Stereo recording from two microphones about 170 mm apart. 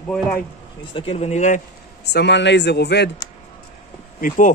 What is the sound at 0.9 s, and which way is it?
Speech, 30° left (ahead or behind).